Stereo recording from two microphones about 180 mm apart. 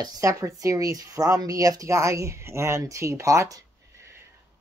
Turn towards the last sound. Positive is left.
turn(degrees=-20)  # may be behind; listen again after turning